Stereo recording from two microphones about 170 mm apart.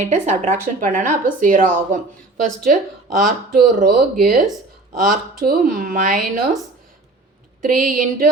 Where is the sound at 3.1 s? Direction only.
55° right (ahead or behind).